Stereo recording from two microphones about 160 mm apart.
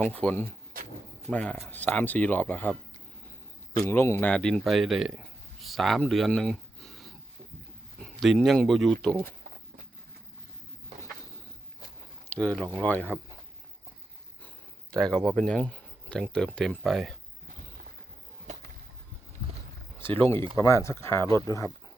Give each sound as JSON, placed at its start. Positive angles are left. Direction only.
{"t": 0.0, "sound": "speech", "side_deg": 10}
{"t": 3.8, "sound": "speech", "side_deg": 15}
{"t": 12.3, "sound": "speech", "side_deg": 5}
{"t": 14.4, "sound": "speech", "side_deg": 5}
{"t": 20.0, "sound": "speech", "side_deg": 10}